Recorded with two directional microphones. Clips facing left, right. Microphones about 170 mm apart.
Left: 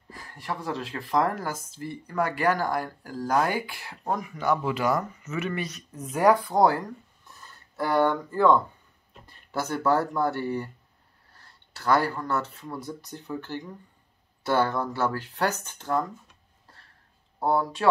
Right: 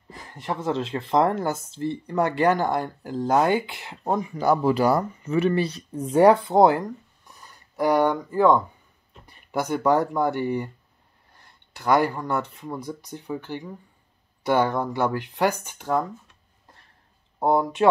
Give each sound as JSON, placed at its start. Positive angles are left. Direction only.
{"t": 0.1, "sound": "speech", "side_deg": -20}
{"t": 7.2, "sound": "a sound", "side_deg": -15}
{"t": 9.2, "sound": "speech", "side_deg": -15}
{"t": 17.4, "sound": "speech", "side_deg": -20}